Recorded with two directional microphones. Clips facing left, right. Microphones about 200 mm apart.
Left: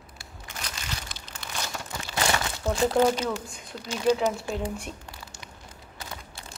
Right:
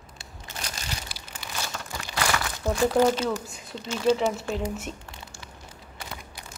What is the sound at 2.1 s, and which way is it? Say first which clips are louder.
Crumpling: left 1 dB; 25° left (ahead or behind).